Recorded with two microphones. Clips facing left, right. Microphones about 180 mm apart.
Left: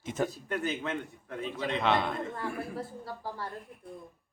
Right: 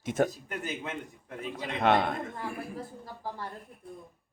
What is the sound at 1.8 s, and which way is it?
Speech, 50° right (ahead or behind).